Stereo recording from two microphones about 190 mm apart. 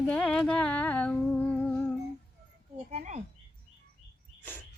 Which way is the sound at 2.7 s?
35° right (ahead or behind).